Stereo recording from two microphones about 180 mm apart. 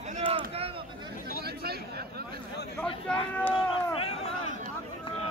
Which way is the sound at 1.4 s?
60° right (ahead or behind).